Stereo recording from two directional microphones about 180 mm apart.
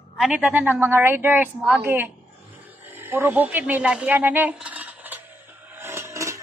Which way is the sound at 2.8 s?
10° right (ahead or behind).